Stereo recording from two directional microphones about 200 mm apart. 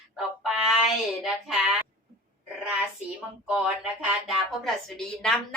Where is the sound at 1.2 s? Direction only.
Centre (ahead or behind).